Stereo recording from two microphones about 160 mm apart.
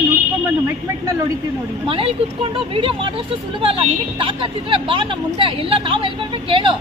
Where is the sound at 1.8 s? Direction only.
35° right (ahead or behind).